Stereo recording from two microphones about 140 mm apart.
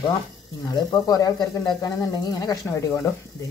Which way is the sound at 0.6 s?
30° left (ahead or behind).